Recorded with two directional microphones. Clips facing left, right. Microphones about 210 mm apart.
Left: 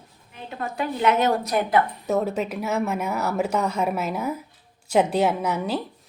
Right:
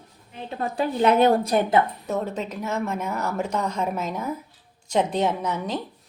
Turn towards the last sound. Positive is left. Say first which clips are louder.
# left 2 dB
turn(degrees=10)  # may be behind; listen again after turning